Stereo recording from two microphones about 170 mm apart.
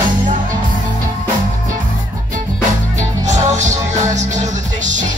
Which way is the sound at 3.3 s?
45° right (ahead or behind).